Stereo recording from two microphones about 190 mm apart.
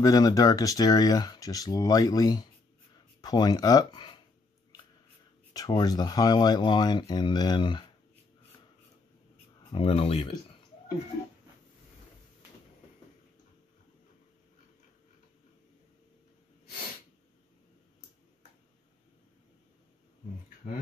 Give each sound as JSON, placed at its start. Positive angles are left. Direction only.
{"t": 0.0, "sound": "speech", "side_deg": 20}
{"t": 5.5, "sound": "speech", "side_deg": 20}
{"t": 9.7, "sound": "speech", "side_deg": 30}